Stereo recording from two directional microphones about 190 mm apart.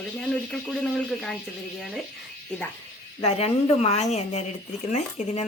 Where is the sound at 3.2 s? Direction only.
30° left (ahead or behind).